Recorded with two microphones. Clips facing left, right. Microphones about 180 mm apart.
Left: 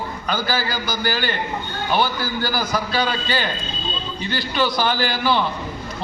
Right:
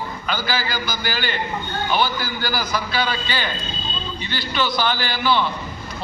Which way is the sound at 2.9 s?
40° left (ahead or behind).